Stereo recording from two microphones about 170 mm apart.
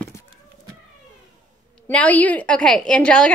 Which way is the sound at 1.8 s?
10° left (ahead or behind).